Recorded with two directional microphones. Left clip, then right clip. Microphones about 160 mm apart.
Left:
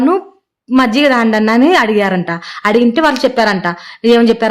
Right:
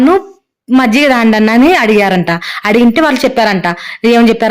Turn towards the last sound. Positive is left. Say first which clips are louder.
# right 1 dB
turn(degrees=-25)  # may be behind; listen again after turning